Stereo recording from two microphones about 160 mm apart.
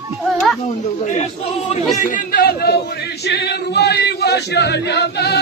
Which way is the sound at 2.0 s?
55° left (ahead or behind).